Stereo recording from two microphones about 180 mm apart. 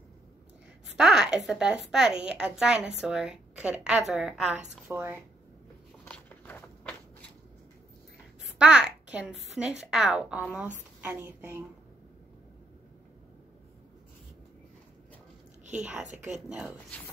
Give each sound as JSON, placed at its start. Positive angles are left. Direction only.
{"t": 0.8, "sound": "a child's voice", "side_deg": -5}
{"t": 6.0, "sound": "a sound", "side_deg": 10}
{"t": 8.5, "sound": "a child's voice", "side_deg": -5}
{"t": 15.7, "sound": "a woman's voice", "side_deg": -5}